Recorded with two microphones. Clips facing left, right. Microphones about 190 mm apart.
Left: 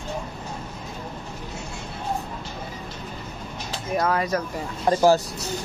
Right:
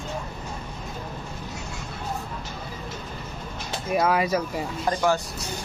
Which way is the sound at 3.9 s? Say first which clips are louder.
Right 1 dB; 10° right (ahead or behind).